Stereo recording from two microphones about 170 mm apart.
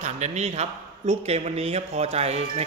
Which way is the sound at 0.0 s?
40° right (ahead or behind).